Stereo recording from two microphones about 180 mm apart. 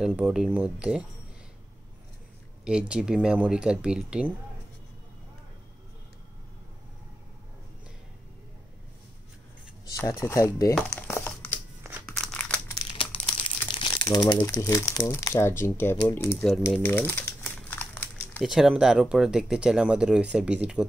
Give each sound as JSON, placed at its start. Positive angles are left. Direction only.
{"t": 0.0, "sound": "speech", "side_deg": -5}
{"t": 2.6, "sound": "speech", "side_deg": -5}
{"t": 9.8, "sound": "speech", "side_deg": 20}
{"t": 10.7, "sound": "crumpling", "side_deg": 10}
{"t": 12.9, "sound": "speech", "side_deg": 30}
{"t": 16.8, "sound": "crumpling", "side_deg": 10}
{"t": 18.4, "sound": "speech", "side_deg": -5}